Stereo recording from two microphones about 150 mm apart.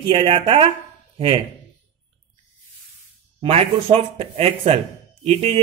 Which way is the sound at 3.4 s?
40° right (ahead or behind).